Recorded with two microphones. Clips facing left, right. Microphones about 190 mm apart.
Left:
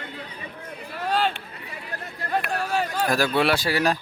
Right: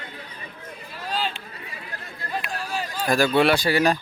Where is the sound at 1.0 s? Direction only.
60° left (ahead or behind).